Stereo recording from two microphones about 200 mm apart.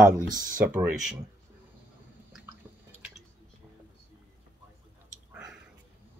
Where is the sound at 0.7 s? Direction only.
5° right (ahead or behind).